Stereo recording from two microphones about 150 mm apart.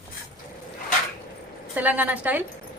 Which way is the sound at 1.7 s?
10° right (ahead or behind).